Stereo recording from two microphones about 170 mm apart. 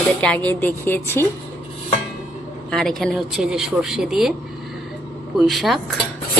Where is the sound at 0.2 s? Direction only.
10° left (ahead or behind).